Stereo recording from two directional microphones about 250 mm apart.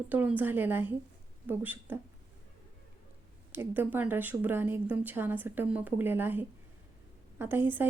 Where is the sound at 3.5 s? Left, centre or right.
Centre.